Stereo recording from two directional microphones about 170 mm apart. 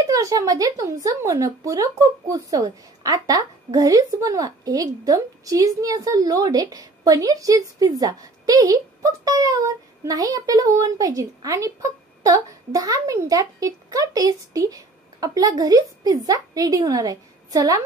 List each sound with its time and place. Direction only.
0.0 s speech: 20° right (ahead or behind)